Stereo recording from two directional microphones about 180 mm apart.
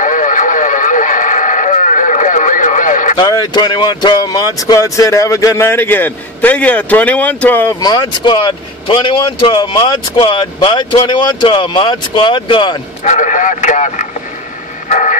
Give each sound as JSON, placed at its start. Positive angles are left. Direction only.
{"t": 0.0, "sound": "radio", "side_deg": 45}
{"t": 3.2, "sound": "speech", "side_deg": 20}
{"t": 13.0, "sound": "speech", "side_deg": 45}
{"t": 14.9, "sound": "vehicle", "side_deg": 40}